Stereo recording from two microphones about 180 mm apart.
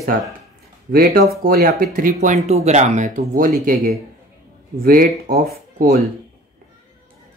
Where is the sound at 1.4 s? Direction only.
55° right (ahead or behind).